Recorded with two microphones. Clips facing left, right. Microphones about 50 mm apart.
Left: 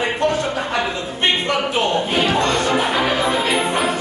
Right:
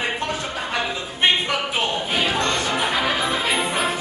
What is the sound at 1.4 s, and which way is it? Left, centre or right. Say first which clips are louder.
Speech: left 4 dB; centre.